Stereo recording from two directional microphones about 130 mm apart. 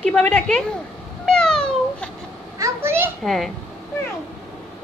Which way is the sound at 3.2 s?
Centre (ahead or behind).